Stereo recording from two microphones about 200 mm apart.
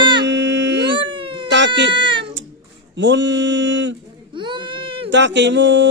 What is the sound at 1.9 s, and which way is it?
Baby cry, 25° right (ahead or behind).